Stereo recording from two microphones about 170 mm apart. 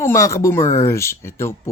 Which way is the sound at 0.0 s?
15° left (ahead or behind).